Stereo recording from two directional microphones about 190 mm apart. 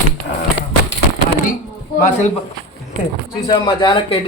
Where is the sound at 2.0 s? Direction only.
45° left (ahead or behind).